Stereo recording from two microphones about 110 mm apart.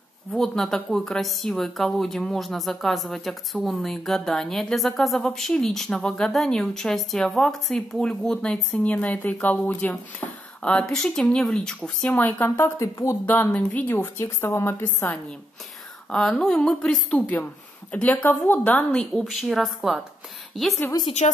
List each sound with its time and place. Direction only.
0.3 s a woman's voice: 5° left (ahead or behind)
10.2 s a sound: 20° left (ahead or behind)
10.6 s speech: 5° left (ahead or behind); by 13.2 s 25° left (ahead or behind)
13.2 s a woman's voice: 15° left (ahead or behind)
16.1 s speech: 5° left (ahead or behind)
21.0 s a woman's voice: 40° left (ahead or behind)